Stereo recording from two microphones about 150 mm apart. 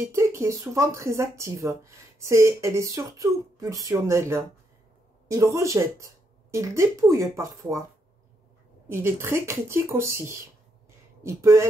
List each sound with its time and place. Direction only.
0.1 s speech: 20° right (ahead or behind)
8.8 s speech: 15° right (ahead or behind)